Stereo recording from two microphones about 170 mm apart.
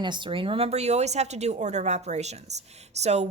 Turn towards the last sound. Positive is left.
turn(degrees=-40)  # may be behind; listen again after turning